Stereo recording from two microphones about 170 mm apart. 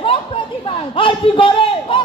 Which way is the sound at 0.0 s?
35° left (ahead or behind).